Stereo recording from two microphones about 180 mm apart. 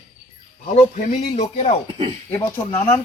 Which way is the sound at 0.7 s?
40° left (ahead or behind).